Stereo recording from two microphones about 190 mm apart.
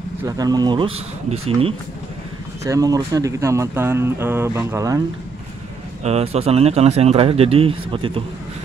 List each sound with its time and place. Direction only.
0.2 s speech: 20° right (ahead or behind)
2.6 s speech: 15° right (ahead or behind)
6.0 s speech: 35° right (ahead or behind)